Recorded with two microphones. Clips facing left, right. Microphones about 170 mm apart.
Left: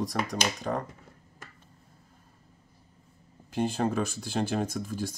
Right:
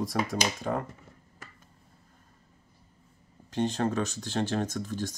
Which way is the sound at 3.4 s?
10° left (ahead or behind).